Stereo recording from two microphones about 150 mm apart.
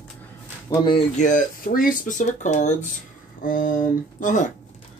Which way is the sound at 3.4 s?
65° left (ahead or behind).